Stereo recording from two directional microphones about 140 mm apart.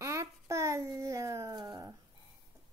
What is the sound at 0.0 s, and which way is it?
Dog, 20° right (ahead or behind).